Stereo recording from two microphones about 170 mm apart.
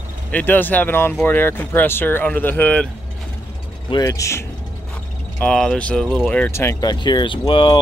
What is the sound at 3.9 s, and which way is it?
Speech, 20° left (ahead or behind).